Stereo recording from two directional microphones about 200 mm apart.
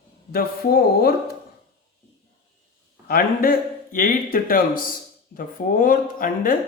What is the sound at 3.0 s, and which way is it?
Speech, 45° left (ahead or behind).